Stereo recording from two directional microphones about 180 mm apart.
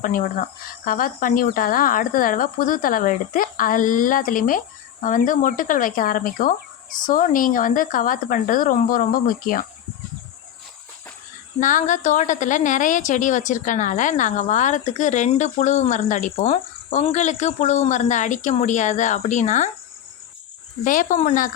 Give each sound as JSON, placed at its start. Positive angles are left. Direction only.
{"t": 0.0, "sound": "a woman's voice", "side_deg": 50}
{"t": 11.6, "sound": "a woman's voice", "side_deg": 45}
{"t": 20.8, "sound": "a woman's voice", "side_deg": 50}